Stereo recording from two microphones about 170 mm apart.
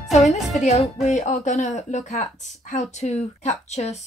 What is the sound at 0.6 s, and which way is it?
Speech, 40° left (ahead or behind).